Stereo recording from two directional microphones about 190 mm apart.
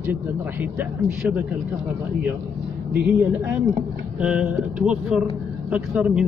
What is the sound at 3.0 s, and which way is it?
Speech, 10° right (ahead or behind).